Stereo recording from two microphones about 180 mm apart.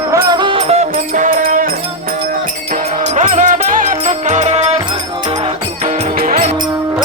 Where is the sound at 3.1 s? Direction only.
40° right (ahead or behind).